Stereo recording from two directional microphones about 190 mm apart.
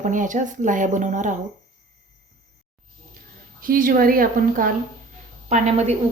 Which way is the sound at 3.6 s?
45° right (ahead or behind).